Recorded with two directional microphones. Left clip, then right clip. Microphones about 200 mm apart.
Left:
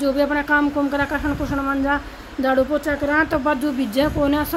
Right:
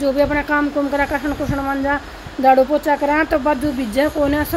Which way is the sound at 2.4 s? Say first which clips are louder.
Right 6 dB; 5° right (ahead or behind).